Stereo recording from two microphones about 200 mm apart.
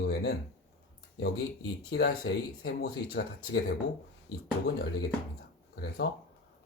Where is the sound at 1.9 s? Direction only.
55° left (ahead or behind).